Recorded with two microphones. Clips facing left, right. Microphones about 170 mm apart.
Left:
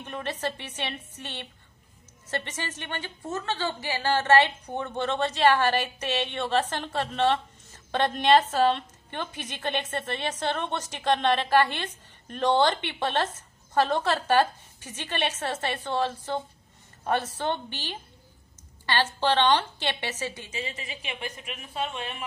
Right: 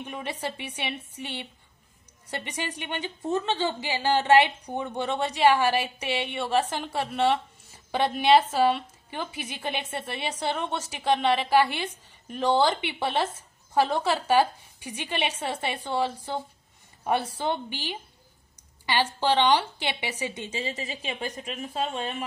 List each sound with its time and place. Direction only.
0.0 s a woman's voice: 10° right (ahead or behind)
20.4 s speech: 30° right (ahead or behind)